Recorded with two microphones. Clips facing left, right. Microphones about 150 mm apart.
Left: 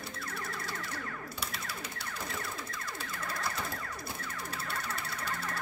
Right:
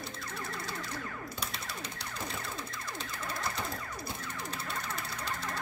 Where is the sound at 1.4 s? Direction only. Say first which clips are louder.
Even; 5° left (ahead or behind).